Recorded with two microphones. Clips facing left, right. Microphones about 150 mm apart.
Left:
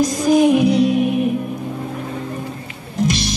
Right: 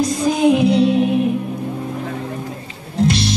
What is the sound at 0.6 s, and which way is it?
Music, 25° right (ahead or behind).